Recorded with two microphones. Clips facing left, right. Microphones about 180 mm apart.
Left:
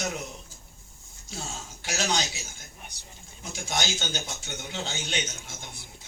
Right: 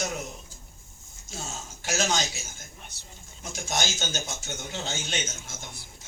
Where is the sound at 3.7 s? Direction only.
45° right (ahead or behind).